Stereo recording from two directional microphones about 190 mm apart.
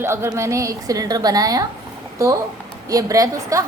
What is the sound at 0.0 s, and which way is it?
A woman's voice, 15° right (ahead or behind).